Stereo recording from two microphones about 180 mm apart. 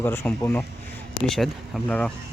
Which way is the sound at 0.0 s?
10° left (ahead or behind).